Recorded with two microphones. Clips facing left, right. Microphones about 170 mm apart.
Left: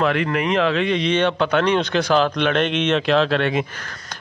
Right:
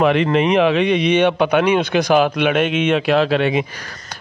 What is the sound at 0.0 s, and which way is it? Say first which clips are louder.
Speech: right 5 dB; 20° right (ahead or behind).